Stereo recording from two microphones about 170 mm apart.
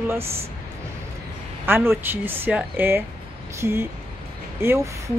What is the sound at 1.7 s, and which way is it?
A woman's voice, 15° right (ahead or behind).